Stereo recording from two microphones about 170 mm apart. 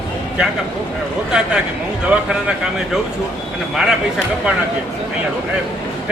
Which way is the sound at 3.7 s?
Centre (ahead or behind).